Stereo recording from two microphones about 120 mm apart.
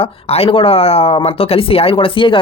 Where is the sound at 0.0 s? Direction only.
55° left (ahead or behind).